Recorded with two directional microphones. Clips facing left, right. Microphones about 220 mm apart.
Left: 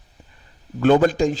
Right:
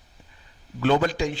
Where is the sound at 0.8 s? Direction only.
45° left (ahead or behind).